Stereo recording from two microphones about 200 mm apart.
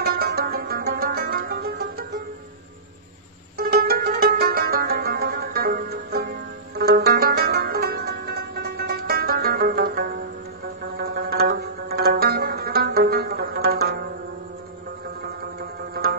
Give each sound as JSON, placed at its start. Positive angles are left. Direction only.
{"t": 0.0, "sound": "music", "side_deg": -50}
{"t": 3.5, "sound": "music", "side_deg": -50}
{"t": 11.0, "sound": "zither", "side_deg": -55}
{"t": 15.9, "sound": "music", "side_deg": -50}